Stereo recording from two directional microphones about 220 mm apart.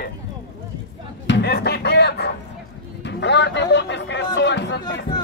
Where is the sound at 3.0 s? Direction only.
50° left (ahead or behind).